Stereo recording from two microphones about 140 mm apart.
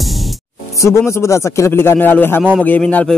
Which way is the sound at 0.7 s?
20° left (ahead or behind).